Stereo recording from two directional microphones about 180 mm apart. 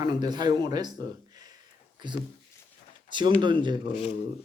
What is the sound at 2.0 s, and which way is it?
Speech, 25° right (ahead or behind).